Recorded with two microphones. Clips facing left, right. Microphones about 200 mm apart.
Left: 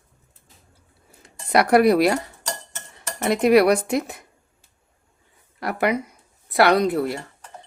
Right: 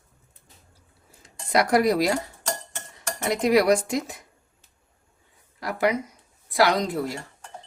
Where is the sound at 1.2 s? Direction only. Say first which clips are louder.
Left 3 dB; 60° left (ahead or behind).